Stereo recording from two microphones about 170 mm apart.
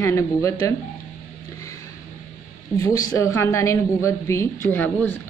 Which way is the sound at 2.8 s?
20° left (ahead or behind).